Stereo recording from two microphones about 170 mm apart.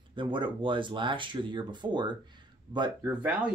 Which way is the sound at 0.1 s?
30° right (ahead or behind).